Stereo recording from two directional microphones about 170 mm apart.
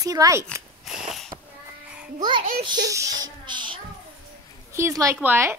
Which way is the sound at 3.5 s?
25° right (ahead or behind).